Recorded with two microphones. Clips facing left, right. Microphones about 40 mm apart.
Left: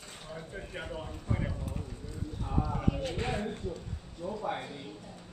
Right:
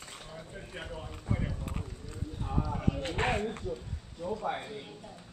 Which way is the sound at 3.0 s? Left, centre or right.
Right.